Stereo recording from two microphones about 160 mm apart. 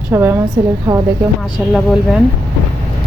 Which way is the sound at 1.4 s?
Centre (ahead or behind).